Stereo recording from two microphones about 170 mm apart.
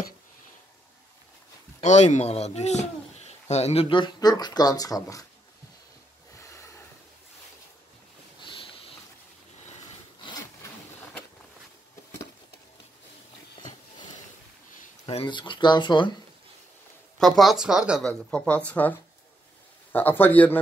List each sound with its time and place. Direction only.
1.8 s speech: 45° left (ahead or behind); by 5.2 s 20° left (ahead or behind)
8.4 s sniff: 30° left (ahead or behind)
15.0 s speech: 30° left (ahead or behind)
17.2 s speech: centre (ahead or behind)